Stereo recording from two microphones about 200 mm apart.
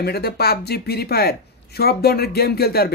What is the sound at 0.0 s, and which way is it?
Speech, 50° left (ahead or behind).